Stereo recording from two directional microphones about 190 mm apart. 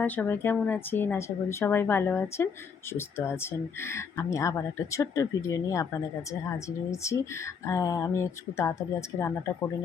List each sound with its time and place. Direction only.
0.0 s speech: 10° left (ahead or behind)